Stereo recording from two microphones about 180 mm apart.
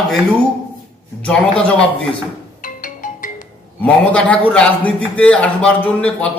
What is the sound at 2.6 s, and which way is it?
Music, 50° left (ahead or behind).